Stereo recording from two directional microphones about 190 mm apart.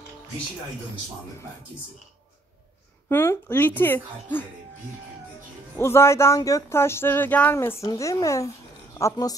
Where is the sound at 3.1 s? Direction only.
10° left (ahead or behind).